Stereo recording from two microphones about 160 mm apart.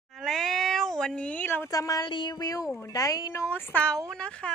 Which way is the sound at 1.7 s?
20° left (ahead or behind).